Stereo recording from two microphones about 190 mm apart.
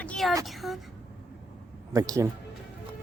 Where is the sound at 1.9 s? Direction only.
20° right (ahead or behind).